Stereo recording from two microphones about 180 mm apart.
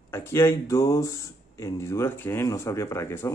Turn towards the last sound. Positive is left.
turn(degrees=15)  # may be behind; listen again after turning